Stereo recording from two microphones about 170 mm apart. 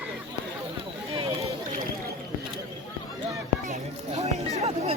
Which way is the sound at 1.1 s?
35° right (ahead or behind).